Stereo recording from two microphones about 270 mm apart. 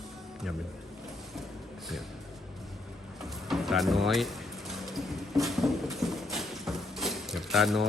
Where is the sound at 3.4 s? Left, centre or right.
Centre.